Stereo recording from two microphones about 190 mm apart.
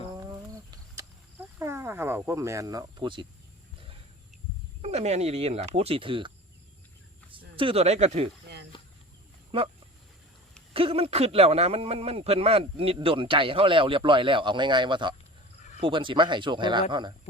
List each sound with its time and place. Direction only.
0.5 s cricket: 20° right (ahead or behind)
4.8 s speech: 35° right (ahead or behind)
9.5 s speech: 30° right (ahead or behind)
10.8 s speech: 30° right (ahead or behind)